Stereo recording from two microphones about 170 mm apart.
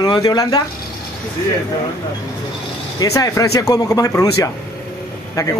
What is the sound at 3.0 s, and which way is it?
A man's voice, 20° left (ahead or behind).